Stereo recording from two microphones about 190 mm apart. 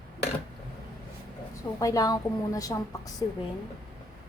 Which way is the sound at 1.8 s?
20° left (ahead or behind).